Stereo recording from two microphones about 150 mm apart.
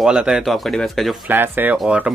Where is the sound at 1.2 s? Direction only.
15° right (ahead or behind).